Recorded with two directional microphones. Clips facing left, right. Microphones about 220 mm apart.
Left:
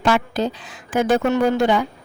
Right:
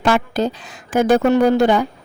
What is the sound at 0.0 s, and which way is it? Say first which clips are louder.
Speech: right 2 dB; 45° right (ahead or behind).